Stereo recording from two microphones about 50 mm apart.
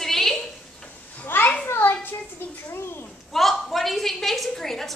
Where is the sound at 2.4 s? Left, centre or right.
Left.